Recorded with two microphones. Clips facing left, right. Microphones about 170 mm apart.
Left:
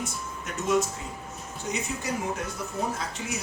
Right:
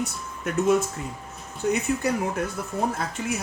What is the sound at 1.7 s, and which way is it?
Speech, 60° right (ahead or behind).